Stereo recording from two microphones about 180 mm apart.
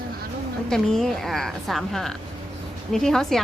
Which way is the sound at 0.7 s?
Centre (ahead or behind).